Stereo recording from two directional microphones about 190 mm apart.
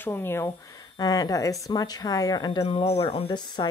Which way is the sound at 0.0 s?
10° left (ahead or behind).